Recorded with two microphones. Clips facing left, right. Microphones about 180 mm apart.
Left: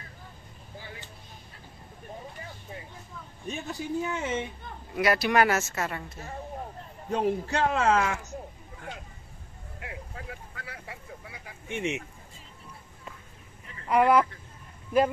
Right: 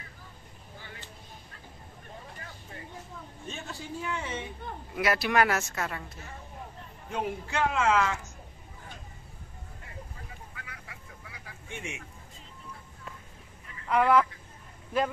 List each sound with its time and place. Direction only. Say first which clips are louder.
3.4 s speech: left 7 dB; 15° left (ahead or behind)
4.9 s speech: left 2 dB; centre (ahead or behind)
7.1 s speech: left 6 dB; 35° left (ahead or behind)
8.0 s speech: even; 55° left (ahead or behind)
9.8 s vehicle: left 7 dB; 90° left
10.5 s vehicle: left 5 dB; 35° left (ahead or behind)
13.8 s speech: left 2 dB; 10° left (ahead or behind)